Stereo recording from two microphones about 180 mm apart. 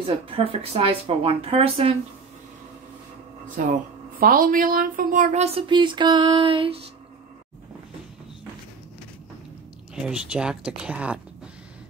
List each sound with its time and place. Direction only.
0.0 s speech: 30° right (ahead or behind)
3.6 s speech: 50° right (ahead or behind); by 6.8 s 30° right (ahead or behind)
9.9 s speech: 5° right (ahead or behind)